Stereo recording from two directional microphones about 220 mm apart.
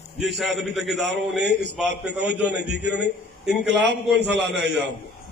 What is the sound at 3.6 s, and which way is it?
A man's voice, 50° right (ahead or behind).